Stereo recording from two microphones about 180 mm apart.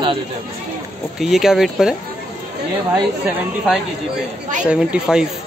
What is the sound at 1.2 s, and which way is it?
Speech, centre (ahead or behind).